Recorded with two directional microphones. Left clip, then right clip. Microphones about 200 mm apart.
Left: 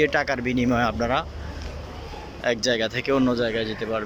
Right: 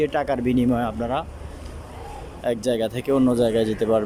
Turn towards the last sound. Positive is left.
turn(degrees=-30)  # may be behind; listen again after turning